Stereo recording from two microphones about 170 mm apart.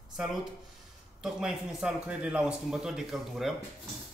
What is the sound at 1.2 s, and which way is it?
A man's voice, 5° right (ahead or behind).